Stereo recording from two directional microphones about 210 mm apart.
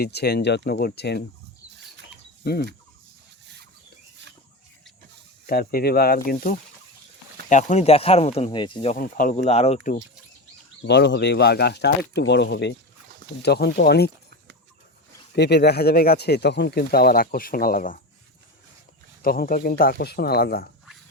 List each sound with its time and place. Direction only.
0.0 s speech: 50° left (ahead or behind)
2.4 s fowl: 50° left (ahead or behind)
5.5 s speech: 45° left (ahead or behind)
7.5 s speech: 35° left (ahead or behind)
10.8 s speech: 55° left (ahead or behind)
15.4 s speech: 55° left (ahead or behind)
19.2 s speech: 45° left (ahead or behind)